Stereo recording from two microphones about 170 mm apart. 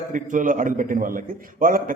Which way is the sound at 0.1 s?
50° right (ahead or behind).